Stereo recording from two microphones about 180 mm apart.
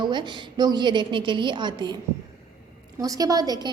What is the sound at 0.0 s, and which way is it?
A woman's voice, 25° right (ahead or behind).